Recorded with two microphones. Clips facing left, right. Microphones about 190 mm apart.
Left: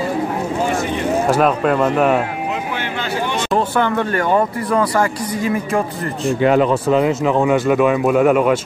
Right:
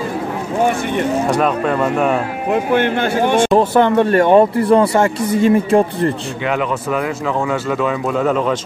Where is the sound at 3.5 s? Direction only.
20° right (ahead or behind).